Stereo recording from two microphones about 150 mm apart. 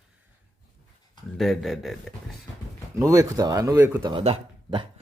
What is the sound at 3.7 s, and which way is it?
Speech, 10° right (ahead or behind).